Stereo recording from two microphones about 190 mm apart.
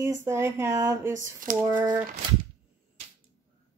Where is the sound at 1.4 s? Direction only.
45° right (ahead or behind).